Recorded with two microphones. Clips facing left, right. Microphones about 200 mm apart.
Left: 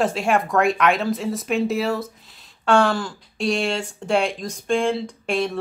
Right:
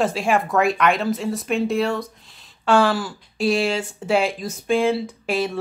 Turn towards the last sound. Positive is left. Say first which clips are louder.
# even
turn(degrees=-5)  # may be behind; listen again after turning